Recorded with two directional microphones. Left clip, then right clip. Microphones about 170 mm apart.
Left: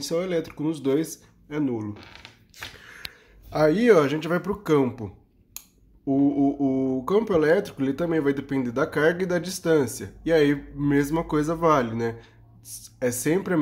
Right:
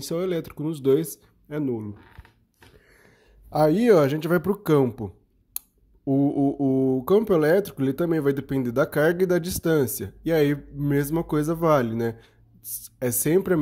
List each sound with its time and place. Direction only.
0.0 s speech: 45° right (ahead or behind)
3.4 s speech: 40° right (ahead or behind)